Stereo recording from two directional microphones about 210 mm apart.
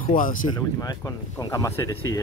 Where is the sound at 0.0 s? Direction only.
40° left (ahead or behind).